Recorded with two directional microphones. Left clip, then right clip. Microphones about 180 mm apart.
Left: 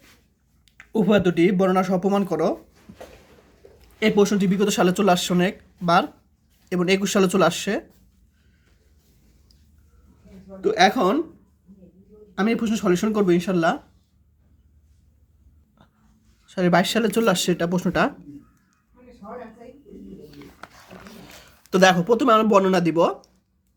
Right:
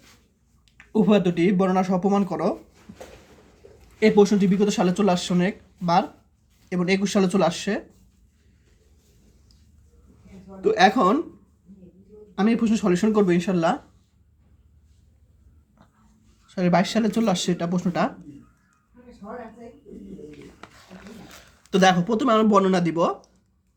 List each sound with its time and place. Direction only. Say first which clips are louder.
0.8 s speech: left 1 dB; 25° left (ahead or behind)
4.0 s speech: right 2 dB; 35° left (ahead or behind)
10.6 s speech: even; 20° left (ahead or behind)
12.3 s speech: even; 30° left (ahead or behind)
16.5 s speech: left 2 dB; 35° left (ahead or behind)
20.9 s dog: left 2 dB; 30° left (ahead or behind)
21.7 s speech: left 3 dB; 35° left (ahead or behind)